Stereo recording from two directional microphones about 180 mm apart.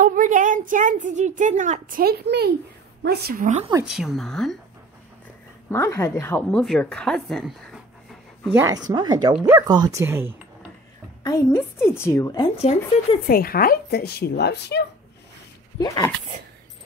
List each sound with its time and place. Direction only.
0.0 s a woman's voice: 45° right (ahead or behind)
3.4 s speech: 35° right (ahead or behind)
3.8 s a woman's voice: centre (ahead or behind)
5.7 s a woman's voice: 15° left (ahead or behind)
8.5 s speech: 20° right (ahead or behind)
11.2 s a woman's voice: 15° left (ahead or behind)
13.3 s a woman's voice: 55° left (ahead or behind)
15.8 s speech: 20° left (ahead or behind)